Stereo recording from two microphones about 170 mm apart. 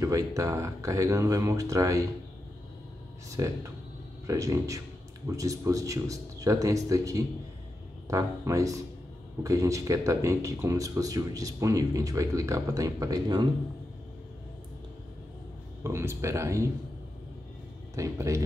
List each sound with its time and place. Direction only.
0.0 s speech: 20° right (ahead or behind)
3.3 s speech: 20° right (ahead or behind)
15.8 s speech: 15° right (ahead or behind)
17.9 s speech: 20° right (ahead or behind)